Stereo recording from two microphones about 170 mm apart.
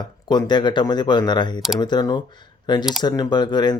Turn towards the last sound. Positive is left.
turn(degrees=25)  # may be behind; listen again after turning